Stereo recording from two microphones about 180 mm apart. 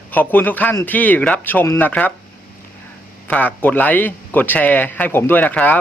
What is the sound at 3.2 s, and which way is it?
A man's voice, 10° left (ahead or behind).